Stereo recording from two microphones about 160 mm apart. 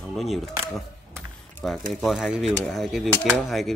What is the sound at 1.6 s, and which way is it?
Speech, 5° left (ahead or behind).